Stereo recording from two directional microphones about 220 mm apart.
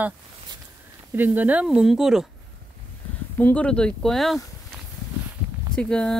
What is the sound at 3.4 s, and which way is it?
Speech, 5° left (ahead or behind).